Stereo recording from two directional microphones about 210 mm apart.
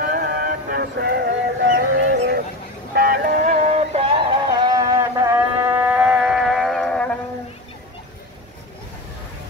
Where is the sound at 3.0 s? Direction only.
45° right (ahead or behind).